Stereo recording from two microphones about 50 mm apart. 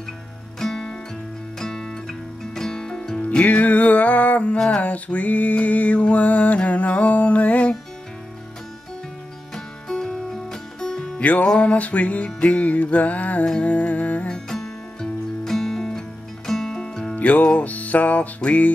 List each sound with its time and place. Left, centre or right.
0.6 s music: centre
3.3 s mantra: left
9.8 s music: centre
11.1 s music: left
11.4 s mantra: left
13.5 s music: left
14.2 s music: centre
17.1 s music: left